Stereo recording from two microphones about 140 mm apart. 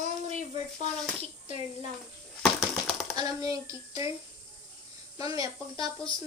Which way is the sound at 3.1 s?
25° right (ahead or behind).